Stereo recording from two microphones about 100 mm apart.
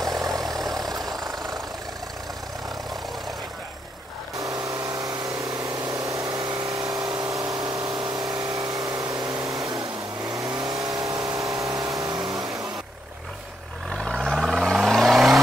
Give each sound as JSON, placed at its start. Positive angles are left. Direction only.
{"t": 0.0, "sound": "vehicle", "side_deg": -35}
{"t": 4.4, "sound": "vehicle", "side_deg": -35}
{"t": 5.8, "sound": "vehicle", "side_deg": -45}
{"t": 13.8, "sound": "vehicle", "side_deg": 5}